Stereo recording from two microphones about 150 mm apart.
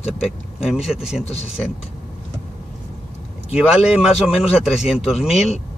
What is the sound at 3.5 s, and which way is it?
Speech, 5° right (ahead or behind).